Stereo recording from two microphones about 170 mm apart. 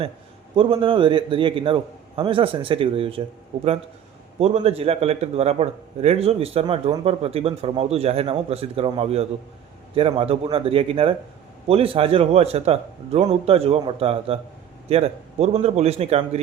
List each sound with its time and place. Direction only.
0.5 s a man's voice: 30° right (ahead or behind)